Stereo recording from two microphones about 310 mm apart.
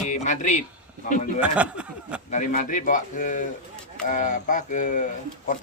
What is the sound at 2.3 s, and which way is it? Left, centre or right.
Speech, left.